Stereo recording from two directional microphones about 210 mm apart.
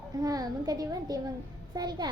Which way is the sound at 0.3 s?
15° right (ahead or behind).